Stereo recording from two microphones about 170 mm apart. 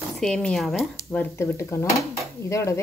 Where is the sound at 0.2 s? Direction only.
5° left (ahead or behind).